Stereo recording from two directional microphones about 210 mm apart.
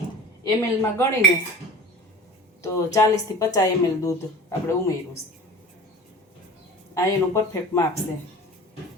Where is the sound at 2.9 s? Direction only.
15° left (ahead or behind).